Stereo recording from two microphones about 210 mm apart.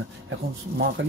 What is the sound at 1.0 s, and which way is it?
Speech, 60° right (ahead or behind).